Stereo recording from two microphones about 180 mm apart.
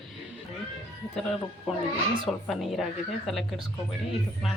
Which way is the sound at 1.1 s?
Centre (ahead or behind).